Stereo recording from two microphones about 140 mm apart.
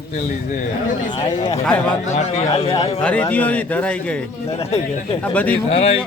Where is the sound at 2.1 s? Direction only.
45° left (ahead or behind).